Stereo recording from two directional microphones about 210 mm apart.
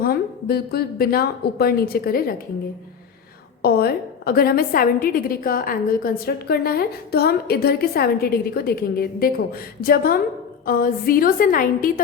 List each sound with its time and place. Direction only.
0.0 s a woman's voice: 45° left (ahead or behind)
3.6 s a woman's voice: 50° left (ahead or behind)